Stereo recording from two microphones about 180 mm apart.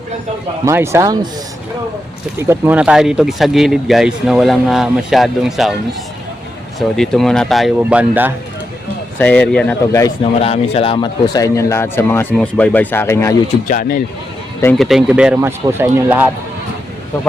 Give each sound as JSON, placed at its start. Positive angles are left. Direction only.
{"t": 0.6, "sound": "speech", "side_deg": -15}
{"t": 2.4, "sound": "speech", "side_deg": -10}
{"t": 6.7, "sound": "speech", "side_deg": 5}
{"t": 9.1, "sound": "speech", "side_deg": 10}
{"t": 10.4, "sound": "speech", "side_deg": 30}
{"t": 13.7, "sound": "speech", "side_deg": 50}
{"t": 14.8, "sound": "speech", "side_deg": 0}